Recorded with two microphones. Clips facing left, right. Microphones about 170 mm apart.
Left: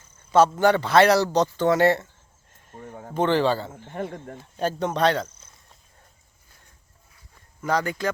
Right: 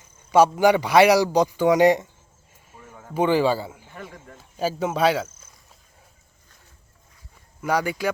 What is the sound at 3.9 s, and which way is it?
Speech, 60° left (ahead or behind).